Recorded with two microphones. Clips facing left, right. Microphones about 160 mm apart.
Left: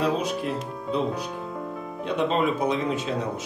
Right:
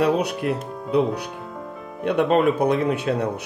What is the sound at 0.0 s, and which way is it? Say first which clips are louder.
Speech: right 4 dB; 70° right (ahead or behind).